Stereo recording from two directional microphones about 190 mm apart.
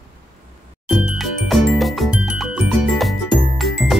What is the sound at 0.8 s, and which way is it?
Music, 5° right (ahead or behind).